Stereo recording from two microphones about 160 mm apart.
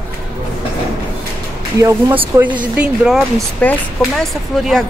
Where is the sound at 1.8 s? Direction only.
20° right (ahead or behind).